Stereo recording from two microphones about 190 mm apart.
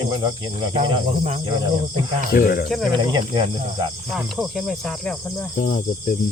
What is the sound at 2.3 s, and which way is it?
Cricket, 50° left (ahead or behind).